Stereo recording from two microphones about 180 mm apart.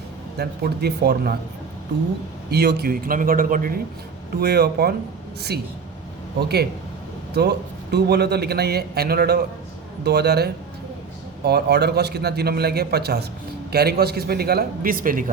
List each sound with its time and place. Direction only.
0.3 s a man's voice: 60° right (ahead or behind)
2.5 s a man's voice: 65° right (ahead or behind)
4.4 s a man's voice: 60° right (ahead or behind)
7.3 s a man's voice: 65° right (ahead or behind)